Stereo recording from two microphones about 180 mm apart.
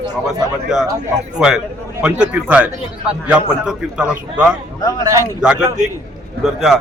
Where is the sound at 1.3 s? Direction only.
5° right (ahead or behind).